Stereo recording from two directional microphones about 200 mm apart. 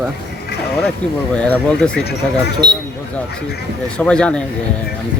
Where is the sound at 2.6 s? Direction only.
55° right (ahead or behind).